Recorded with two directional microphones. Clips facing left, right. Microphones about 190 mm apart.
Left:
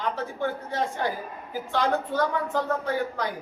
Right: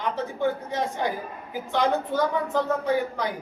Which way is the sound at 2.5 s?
15° right (ahead or behind).